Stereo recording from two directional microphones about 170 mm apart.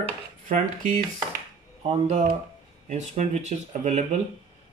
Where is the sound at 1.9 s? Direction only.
40° right (ahead or behind).